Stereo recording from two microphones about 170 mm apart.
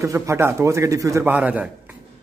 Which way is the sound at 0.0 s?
15° right (ahead or behind).